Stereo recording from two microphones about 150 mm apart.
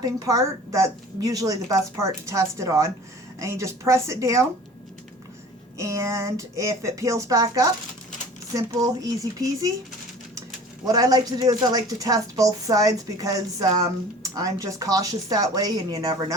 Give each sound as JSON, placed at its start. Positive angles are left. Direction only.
{"t": 0.0, "sound": "speech", "side_deg": -25}
{"t": 5.7, "sound": "speech", "side_deg": -20}
{"t": 10.9, "sound": "speech", "side_deg": -25}